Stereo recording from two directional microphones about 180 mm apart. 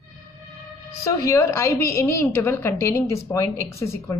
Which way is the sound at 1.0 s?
15° left (ahead or behind).